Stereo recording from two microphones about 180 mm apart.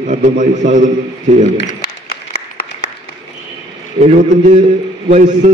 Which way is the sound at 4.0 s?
45° right (ahead or behind).